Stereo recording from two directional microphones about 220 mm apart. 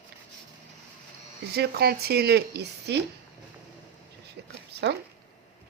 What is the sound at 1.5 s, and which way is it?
Speech, 45° right (ahead or behind).